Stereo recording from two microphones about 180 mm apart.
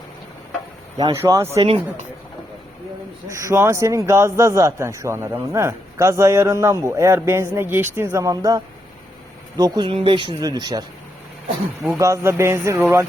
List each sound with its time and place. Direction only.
0.9 s speech: 20° right (ahead or behind)
3.2 s speech: 15° right (ahead or behind)
11.9 s speech: 15° right (ahead or behind)